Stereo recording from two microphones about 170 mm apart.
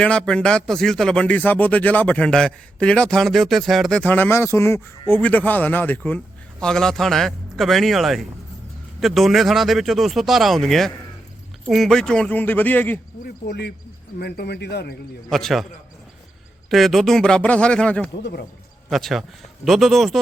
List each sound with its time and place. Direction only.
0.0 s a man's voice: 5° left (ahead or behind)
13.5 s a man's voice: 70° left (ahead or behind)
15.3 s speech: centre (ahead or behind)
16.6 s speech: centre (ahead or behind)
18.2 s a man's voice: 80° left
18.9 s speech: centre (ahead or behind)